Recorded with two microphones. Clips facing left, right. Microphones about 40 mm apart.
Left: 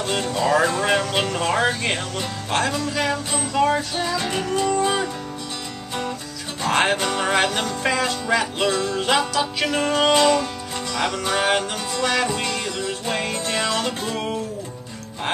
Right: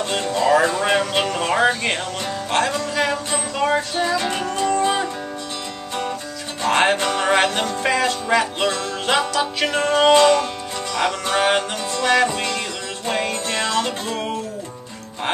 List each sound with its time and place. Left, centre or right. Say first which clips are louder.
0.0 s music: right 2 dB; centre
6.6 s music: right 2 dB; centre